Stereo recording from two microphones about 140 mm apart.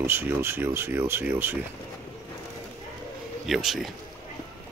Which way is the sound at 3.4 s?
Centre (ahead or behind).